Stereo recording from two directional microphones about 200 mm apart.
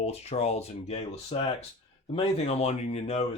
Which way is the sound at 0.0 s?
30° left (ahead or behind).